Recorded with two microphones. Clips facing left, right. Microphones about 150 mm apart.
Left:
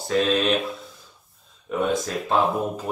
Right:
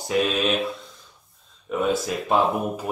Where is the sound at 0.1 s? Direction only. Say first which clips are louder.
Left 1 dB; 10° right (ahead or behind).